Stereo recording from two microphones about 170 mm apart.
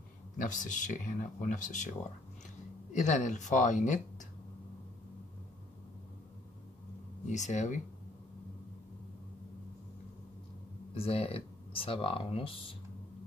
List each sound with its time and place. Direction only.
0.4 s speech: 50° left (ahead or behind)
7.2 s speech: 45° left (ahead or behind)
11.0 s speech: 35° left (ahead or behind)